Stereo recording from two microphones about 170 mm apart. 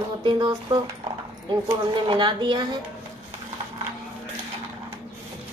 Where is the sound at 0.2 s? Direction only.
25° right (ahead or behind).